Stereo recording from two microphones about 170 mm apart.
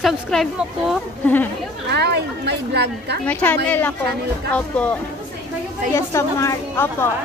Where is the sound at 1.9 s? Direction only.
80° right.